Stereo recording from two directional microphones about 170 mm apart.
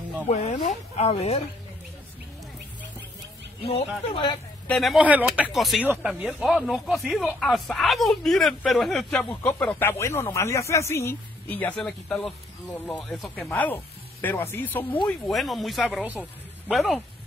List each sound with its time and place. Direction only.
0.3 s speech: 45° left (ahead or behind)
3.6 s speech: 35° left (ahead or behind)
4.6 s speech: centre (ahead or behind)
16.2 s speech: 5° left (ahead or behind)